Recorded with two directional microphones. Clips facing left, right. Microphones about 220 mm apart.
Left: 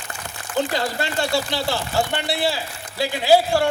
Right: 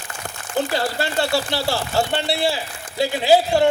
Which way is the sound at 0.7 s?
20° left (ahead or behind).